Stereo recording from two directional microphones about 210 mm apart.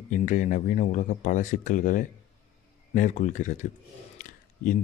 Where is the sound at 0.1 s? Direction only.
40° left (ahead or behind).